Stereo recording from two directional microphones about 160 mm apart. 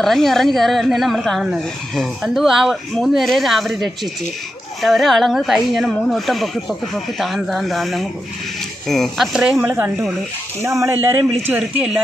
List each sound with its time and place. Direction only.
0.0 s a woman's voice: centre (ahead or behind)